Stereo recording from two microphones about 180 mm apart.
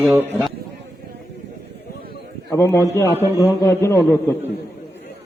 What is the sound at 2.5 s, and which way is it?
A man's voice, 15° left (ahead or behind).